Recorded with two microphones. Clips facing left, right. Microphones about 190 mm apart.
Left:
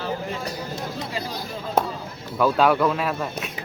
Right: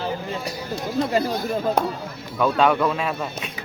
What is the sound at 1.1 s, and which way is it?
Speech, 50° right (ahead or behind).